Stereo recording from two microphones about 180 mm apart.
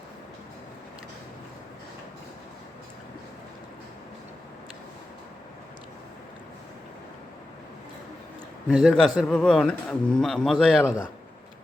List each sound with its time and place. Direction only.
8.7 s speech: centre (ahead or behind)